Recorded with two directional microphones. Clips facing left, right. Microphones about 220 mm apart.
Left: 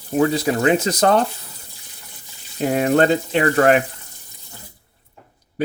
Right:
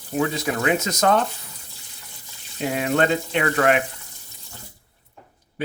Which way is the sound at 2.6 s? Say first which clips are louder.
Left 5 dB; 45° left (ahead or behind).